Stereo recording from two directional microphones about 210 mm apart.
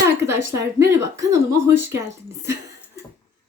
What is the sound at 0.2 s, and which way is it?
Speech, 15° right (ahead or behind).